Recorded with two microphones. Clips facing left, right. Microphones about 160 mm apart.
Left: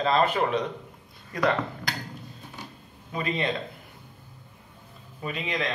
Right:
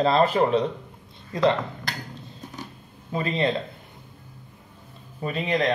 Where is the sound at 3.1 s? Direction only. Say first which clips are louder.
Right 3 dB; 30° right (ahead or behind).